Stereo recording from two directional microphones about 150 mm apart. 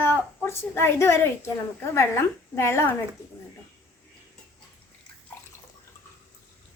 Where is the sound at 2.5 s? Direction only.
15° left (ahead or behind).